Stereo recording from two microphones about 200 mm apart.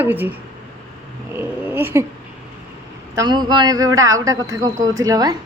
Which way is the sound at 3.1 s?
20° right (ahead or behind).